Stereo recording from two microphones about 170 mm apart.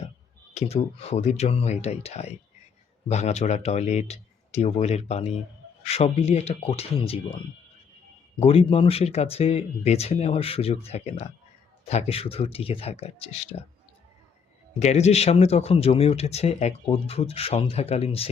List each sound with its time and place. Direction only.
0.5 s speech: 35° left (ahead or behind)
8.4 s speech: 35° left (ahead or behind)
14.8 s speech: 40° left (ahead or behind)